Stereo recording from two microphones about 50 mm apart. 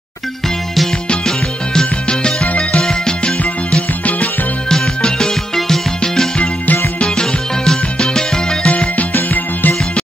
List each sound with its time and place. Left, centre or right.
0.7 s music: centre
8.6 s music: left